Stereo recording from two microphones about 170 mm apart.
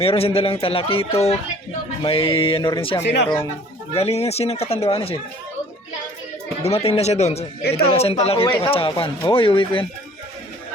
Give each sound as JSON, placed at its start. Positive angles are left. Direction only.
{"t": 0.0, "sound": "speech", "side_deg": 35}
{"t": 3.0, "sound": "speech", "side_deg": 85}
{"t": 3.9, "sound": "speech", "side_deg": 35}
{"t": 6.6, "sound": "speech", "side_deg": 35}